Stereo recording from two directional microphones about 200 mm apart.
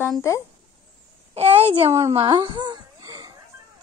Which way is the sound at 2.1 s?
20° right (ahead or behind).